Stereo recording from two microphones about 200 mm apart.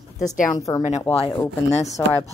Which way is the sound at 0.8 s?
35° left (ahead or behind).